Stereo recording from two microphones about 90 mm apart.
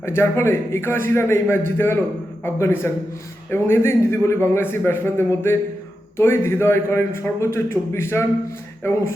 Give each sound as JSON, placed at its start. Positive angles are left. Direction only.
{"t": 0.0, "sound": "a man's voice", "side_deg": 30}